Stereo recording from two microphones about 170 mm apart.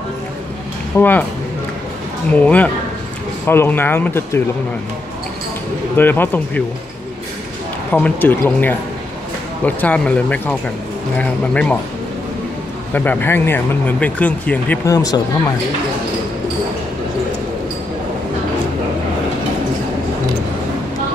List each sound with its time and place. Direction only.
0.9 s speech: 10° left (ahead or behind)
2.3 s speech: 10° left (ahead or behind)
5.9 s speech: 10° left (ahead or behind)
7.9 s speech: 10° left (ahead or behind)
12.9 s speech: 10° left (ahead or behind)
14.9 s speech: 20° left (ahead or behind)